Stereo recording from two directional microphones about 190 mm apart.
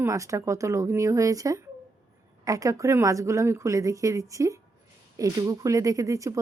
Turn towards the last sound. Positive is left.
turn(degrees=-15)  # may be behind; listen again after turning